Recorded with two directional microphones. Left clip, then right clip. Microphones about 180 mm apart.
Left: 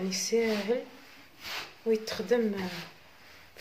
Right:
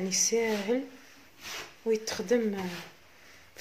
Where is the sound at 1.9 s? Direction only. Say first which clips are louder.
Even; 40° right (ahead or behind).